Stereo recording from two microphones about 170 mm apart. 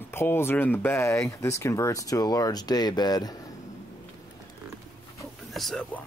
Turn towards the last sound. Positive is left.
turn(degrees=5)  # may be behind; listen again after turning